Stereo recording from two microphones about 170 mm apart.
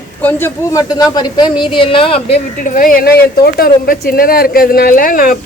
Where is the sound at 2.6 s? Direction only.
55° left (ahead or behind).